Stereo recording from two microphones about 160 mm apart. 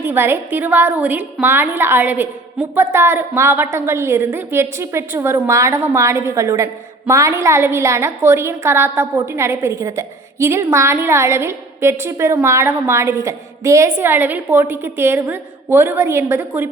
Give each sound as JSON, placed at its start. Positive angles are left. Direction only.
{"t": 0.0, "sound": "a woman's voice", "side_deg": -15}